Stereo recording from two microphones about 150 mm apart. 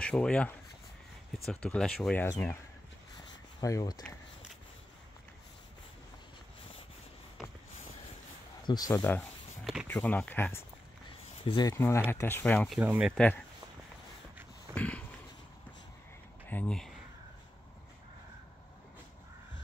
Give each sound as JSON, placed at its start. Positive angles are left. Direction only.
{"t": 0.0, "sound": "speech", "side_deg": 5}
{"t": 3.6, "sound": "speech", "side_deg": 25}
{"t": 8.6, "sound": "speech", "side_deg": 25}
{"t": 11.4, "sound": "speech", "side_deg": 30}
{"t": 11.7, "sound": "speech", "side_deg": 15}
{"t": 12.7, "sound": "speech", "side_deg": -5}
{"t": 13.1, "sound": "speech", "side_deg": 10}
{"t": 14.7, "sound": "a sound", "side_deg": 10}
{"t": 16.4, "sound": "speech", "side_deg": 10}